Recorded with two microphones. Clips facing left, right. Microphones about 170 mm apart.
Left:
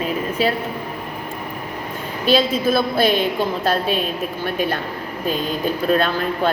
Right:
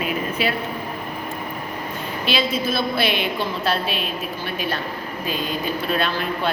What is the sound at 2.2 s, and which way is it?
A woman's voice, 45° left (ahead or behind).